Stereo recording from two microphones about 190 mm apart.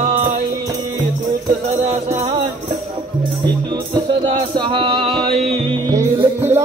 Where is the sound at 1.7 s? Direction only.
35° right (ahead or behind).